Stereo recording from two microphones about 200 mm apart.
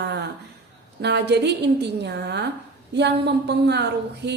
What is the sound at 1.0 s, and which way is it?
Speech, 55° right (ahead or behind).